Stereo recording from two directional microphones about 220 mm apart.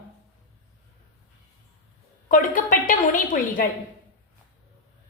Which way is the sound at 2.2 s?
35° left (ahead or behind).